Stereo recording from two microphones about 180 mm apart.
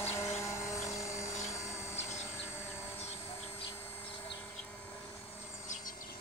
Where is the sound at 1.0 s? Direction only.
15° left (ahead or behind).